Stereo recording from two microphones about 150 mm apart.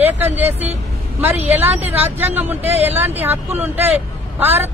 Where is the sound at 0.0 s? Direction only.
15° right (ahead or behind).